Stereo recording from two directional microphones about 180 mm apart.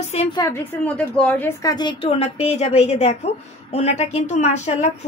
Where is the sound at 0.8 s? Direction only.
5° left (ahead or behind).